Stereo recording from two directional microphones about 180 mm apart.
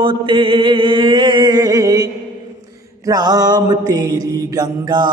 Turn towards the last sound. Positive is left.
turn(degrees=-20)  # may be behind; listen again after turning